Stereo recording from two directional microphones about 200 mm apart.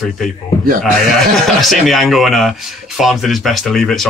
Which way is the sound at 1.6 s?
Centre (ahead or behind).